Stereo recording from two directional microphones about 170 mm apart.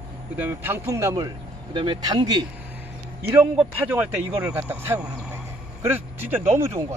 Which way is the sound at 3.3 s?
10° right (ahead or behind).